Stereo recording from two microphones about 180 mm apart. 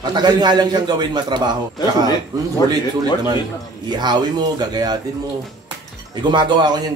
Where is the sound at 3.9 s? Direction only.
25° right (ahead or behind).